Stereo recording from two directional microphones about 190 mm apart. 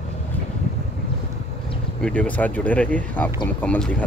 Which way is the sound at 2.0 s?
5° left (ahead or behind).